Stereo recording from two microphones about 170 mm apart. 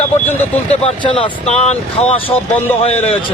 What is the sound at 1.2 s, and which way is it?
Speech, 40° left (ahead or behind).